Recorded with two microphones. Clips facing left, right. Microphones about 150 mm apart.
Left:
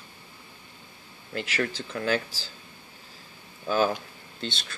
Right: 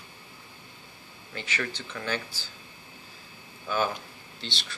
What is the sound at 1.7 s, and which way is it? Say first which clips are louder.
Speech: left 6 dB; 45° left (ahead or behind).